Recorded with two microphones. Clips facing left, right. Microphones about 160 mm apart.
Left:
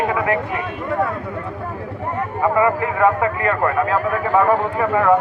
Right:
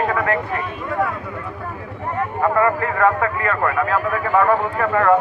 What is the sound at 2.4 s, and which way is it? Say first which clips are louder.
A man's voice: left 1 dB; 15° left (ahead or behind).